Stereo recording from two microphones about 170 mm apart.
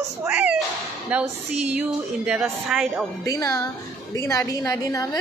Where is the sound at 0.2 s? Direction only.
10° right (ahead or behind).